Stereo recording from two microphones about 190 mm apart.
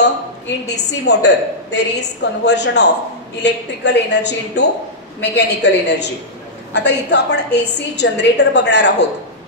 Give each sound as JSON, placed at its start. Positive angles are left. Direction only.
{"t": 0.7, "sound": "a woman's voice", "side_deg": 65}